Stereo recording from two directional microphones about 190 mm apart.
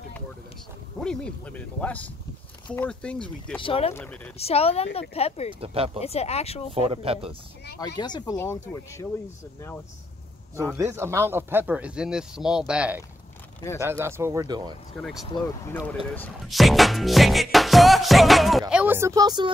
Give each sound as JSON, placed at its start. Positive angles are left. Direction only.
{"t": 1.0, "sound": "speech", "side_deg": 5}
{"t": 2.7, "sound": "music", "side_deg": 5}
{"t": 3.6, "sound": "speech", "side_deg": 30}
{"t": 3.9, "sound": "speech", "side_deg": 5}
{"t": 4.4, "sound": "speech", "side_deg": 30}
{"t": 5.5, "sound": "speech", "side_deg": -30}
{"t": 5.9, "sound": "speech", "side_deg": 35}
{"t": 6.7, "sound": "speech", "side_deg": -30}
{"t": 8.0, "sound": "speech", "side_deg": 20}
{"t": 10.7, "sound": "speech", "side_deg": -15}
{"t": 15.0, "sound": "music", "side_deg": 0}
{"t": 15.2, "sound": "speech", "side_deg": 20}
{"t": 16.4, "sound": "music", "side_deg": 0}